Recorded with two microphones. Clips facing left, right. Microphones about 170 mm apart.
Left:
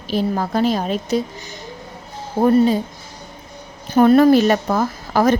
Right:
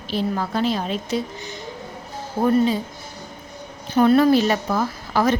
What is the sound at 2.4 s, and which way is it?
Speech, 40° left (ahead or behind).